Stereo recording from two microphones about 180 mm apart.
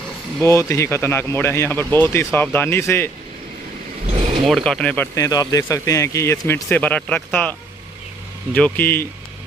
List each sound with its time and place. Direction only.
0.4 s speech: 15° left (ahead or behind)
4.5 s speech: centre (ahead or behind)
8.5 s speech: 10° left (ahead or behind)